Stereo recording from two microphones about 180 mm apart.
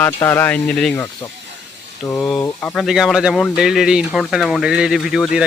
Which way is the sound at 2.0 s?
20° left (ahead or behind).